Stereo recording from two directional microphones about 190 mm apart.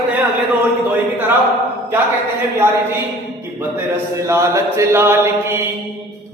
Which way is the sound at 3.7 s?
15° right (ahead or behind).